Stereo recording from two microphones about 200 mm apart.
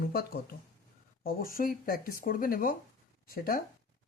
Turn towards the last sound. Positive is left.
turn(degrees=45)  # may be behind; listen again after turning